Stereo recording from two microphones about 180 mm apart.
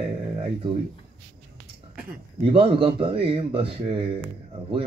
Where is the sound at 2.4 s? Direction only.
30° right (ahead or behind).